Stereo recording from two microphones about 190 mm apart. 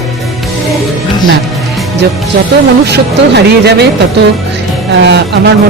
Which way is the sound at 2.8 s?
60° right (ahead or behind).